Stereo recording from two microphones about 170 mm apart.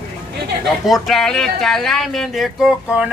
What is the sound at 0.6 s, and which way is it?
Speech, centre (ahead or behind).